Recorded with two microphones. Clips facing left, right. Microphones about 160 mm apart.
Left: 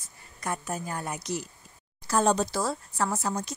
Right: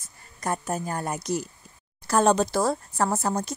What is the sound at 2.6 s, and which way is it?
Speech, 45° right (ahead or behind).